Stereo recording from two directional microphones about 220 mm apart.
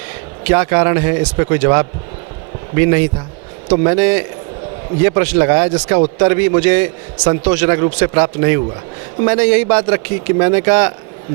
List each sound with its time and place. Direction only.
0.4 s a man's voice: 15° right (ahead or behind)